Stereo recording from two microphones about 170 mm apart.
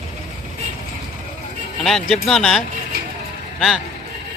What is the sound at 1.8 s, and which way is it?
Speech, centre (ahead or behind).